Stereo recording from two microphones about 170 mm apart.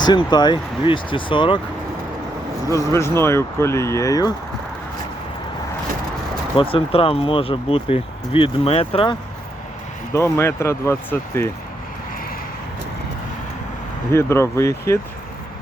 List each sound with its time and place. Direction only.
0.0 s speech: 25° left (ahead or behind)
2.6 s speech: 20° left (ahead or behind)
6.6 s speech: 30° left (ahead or behind)
10.1 s speech: 15° left (ahead or behind)
14.1 s speech: 15° left (ahead or behind)